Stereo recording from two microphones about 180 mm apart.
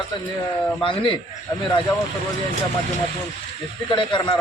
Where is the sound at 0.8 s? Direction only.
30° left (ahead or behind).